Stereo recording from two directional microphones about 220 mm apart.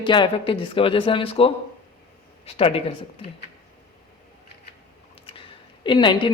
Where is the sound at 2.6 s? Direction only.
25° left (ahead or behind).